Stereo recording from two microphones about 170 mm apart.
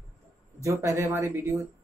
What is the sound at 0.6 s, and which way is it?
Speech, 15° right (ahead or behind).